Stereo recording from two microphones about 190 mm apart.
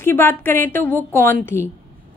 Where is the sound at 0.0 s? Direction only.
10° left (ahead or behind).